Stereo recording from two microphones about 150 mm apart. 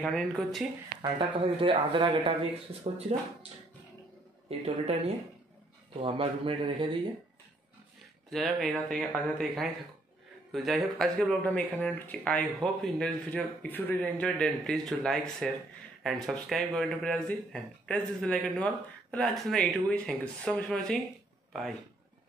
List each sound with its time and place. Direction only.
0.1 s speech: centre (ahead or behind)
1.3 s a man's voice: 35° right (ahead or behind)
2.8 s speech: 45° right (ahead or behind)
4.5 s a man's voice: 40° right (ahead or behind)
8.3 s speech: centre (ahead or behind)